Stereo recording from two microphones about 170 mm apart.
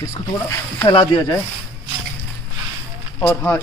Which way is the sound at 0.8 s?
25° left (ahead or behind).